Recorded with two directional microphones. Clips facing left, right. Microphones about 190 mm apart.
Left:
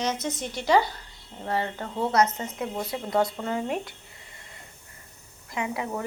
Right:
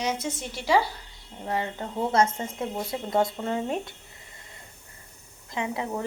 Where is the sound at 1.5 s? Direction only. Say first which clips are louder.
Left 1 dB; 20° right (ahead or behind).